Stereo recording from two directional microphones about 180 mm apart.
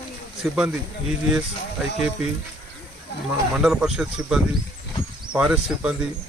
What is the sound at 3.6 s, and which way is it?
Speech, 5° right (ahead or behind).